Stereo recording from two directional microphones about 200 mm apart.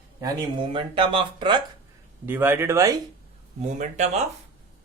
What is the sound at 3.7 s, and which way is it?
Speech, 35° right (ahead or behind).